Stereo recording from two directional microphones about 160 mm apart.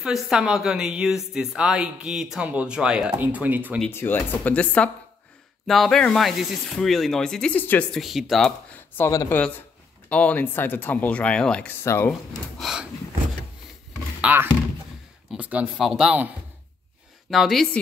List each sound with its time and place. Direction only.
0.0 s a woman's voice: 5° right (ahead or behind)
3.9 s a woman's voice: 10° left (ahead or behind)
8.0 s speech: centre (ahead or behind); by 12.1 s 15° left (ahead or behind)
12.1 s a woman's voice: centre (ahead or behind)
14.2 s speech: 15° right (ahead or behind)
17.3 s a woman's voice: centre (ahead or behind)